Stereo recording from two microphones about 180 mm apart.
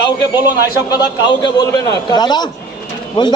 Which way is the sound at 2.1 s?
25° left (ahead or behind).